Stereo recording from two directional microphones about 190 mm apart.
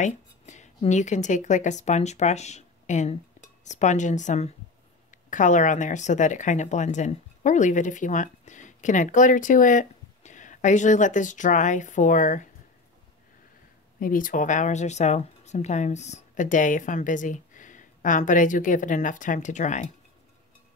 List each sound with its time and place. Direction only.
0.0 s a sound: 40° left (ahead or behind)
0.8 s speech: 40° left (ahead or behind)
13.9 s speech: 45° left (ahead or behind)